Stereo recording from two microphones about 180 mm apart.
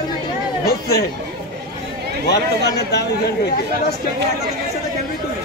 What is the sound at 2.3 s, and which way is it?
Speech, 65° left (ahead or behind).